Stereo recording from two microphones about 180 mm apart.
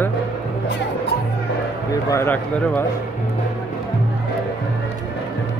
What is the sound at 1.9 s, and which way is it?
Speech, 15° left (ahead or behind).